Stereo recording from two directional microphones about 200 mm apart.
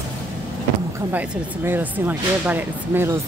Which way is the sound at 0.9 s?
5° right (ahead or behind).